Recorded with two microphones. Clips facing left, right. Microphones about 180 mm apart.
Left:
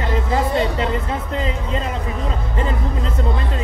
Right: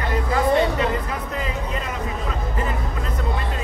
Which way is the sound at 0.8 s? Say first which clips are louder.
Left 1 dB; 25° left (ahead or behind).